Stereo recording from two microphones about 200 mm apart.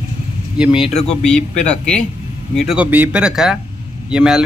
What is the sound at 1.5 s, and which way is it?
Speech, 35° left (ahead or behind).